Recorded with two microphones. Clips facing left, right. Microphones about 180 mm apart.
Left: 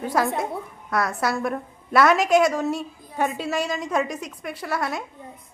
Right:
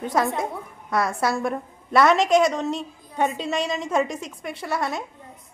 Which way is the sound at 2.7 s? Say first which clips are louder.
Even; 20° right (ahead or behind).